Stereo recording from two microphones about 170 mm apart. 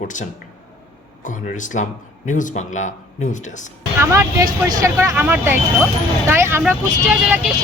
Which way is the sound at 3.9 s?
15° right (ahead or behind).